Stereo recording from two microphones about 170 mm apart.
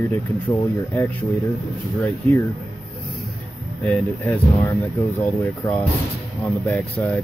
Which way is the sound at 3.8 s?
5° left (ahead or behind).